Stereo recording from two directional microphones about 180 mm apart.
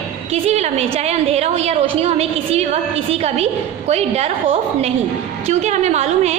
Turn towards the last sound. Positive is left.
turn(degrees=-35)  # may be behind; listen again after turning